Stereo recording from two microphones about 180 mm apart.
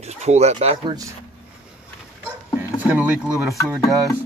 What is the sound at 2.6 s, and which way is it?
Speech, 10° right (ahead or behind).